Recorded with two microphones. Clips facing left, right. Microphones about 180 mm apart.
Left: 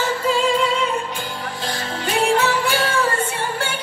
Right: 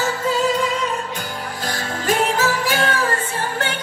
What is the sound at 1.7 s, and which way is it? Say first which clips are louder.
Music: right 2 dB; 45° right (ahead or behind).